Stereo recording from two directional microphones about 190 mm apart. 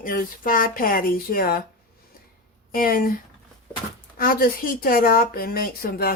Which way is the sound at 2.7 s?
50° left (ahead or behind).